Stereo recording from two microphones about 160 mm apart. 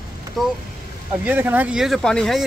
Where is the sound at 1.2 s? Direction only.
10° right (ahead or behind).